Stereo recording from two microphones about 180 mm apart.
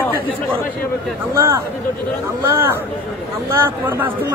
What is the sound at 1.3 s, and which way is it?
A man's voice, 15° right (ahead or behind).